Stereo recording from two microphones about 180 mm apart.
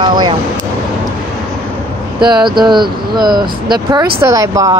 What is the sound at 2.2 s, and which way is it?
Speech, 25° right (ahead or behind).